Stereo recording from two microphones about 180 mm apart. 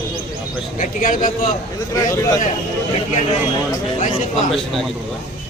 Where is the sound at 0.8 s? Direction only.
50° left (ahead or behind).